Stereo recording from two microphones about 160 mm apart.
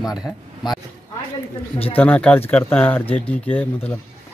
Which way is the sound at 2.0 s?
10° left (ahead or behind).